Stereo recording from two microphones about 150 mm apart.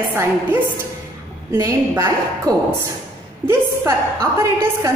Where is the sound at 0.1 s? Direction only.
15° right (ahead or behind).